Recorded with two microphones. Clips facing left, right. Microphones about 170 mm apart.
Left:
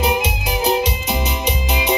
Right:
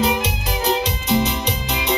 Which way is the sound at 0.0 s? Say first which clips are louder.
Left 1 dB; 15° left (ahead or behind).